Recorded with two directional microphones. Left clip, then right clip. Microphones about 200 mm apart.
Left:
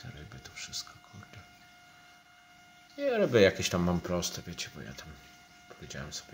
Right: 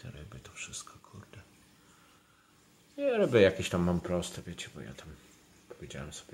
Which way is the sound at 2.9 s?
Centre (ahead or behind).